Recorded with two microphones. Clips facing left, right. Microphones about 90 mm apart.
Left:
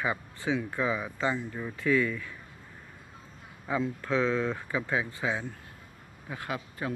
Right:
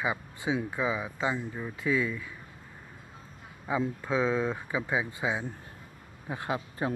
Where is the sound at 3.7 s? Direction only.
15° right (ahead or behind).